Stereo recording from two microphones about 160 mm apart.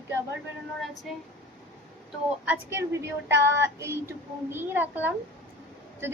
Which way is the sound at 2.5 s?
15° right (ahead or behind).